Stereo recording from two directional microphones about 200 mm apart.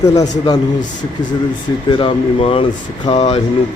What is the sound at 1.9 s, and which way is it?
Speech, 25° left (ahead or behind).